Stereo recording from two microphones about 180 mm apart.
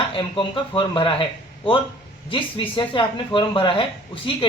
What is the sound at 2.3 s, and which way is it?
Speech, 30° left (ahead or behind).